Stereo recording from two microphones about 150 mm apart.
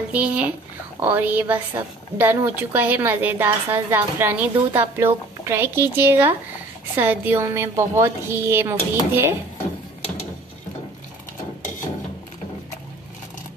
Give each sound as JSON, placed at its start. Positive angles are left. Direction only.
{"t": 0.1, "sound": "a woman's voice", "side_deg": -10}